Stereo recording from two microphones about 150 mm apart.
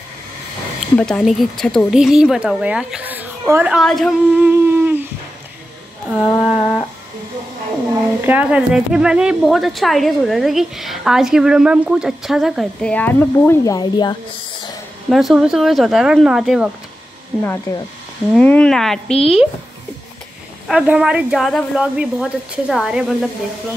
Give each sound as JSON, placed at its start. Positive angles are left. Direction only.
{"t": 0.9, "sound": "speech", "side_deg": 5}
{"t": 3.7, "sound": "speech", "side_deg": 5}
{"t": 4.4, "sound": "humming", "side_deg": -15}
{"t": 6.1, "sound": "speech", "side_deg": -5}
{"t": 8.2, "sound": "speech", "side_deg": -10}
{"t": 12.9, "sound": "speech", "side_deg": 10}
{"t": 13.7, "sound": "speech", "side_deg": 30}
{"t": 15.0, "sound": "speech", "side_deg": 0}
{"t": 17.4, "sound": "speech", "side_deg": 20}
{"t": 18.3, "sound": "speech", "side_deg": 10}
{"t": 20.6, "sound": "speech", "side_deg": -5}